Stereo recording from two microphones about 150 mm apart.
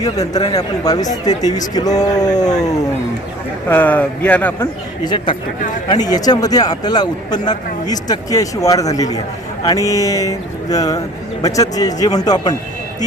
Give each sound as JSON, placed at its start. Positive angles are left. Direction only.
{"t": 0.0, "sound": "speech", "side_deg": 25}
{"t": 3.7, "sound": "speech", "side_deg": 10}
{"t": 5.0, "sound": "speech", "side_deg": 30}